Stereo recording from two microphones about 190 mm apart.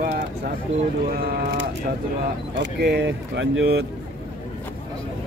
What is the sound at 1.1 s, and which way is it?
Speech, 50° right (ahead or behind).